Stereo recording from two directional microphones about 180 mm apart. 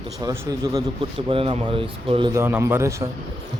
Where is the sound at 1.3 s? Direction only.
30° right (ahead or behind).